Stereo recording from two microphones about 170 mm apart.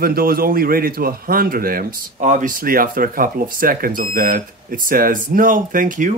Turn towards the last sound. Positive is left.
turn(degrees=-50)  # may be behind; listen again after turning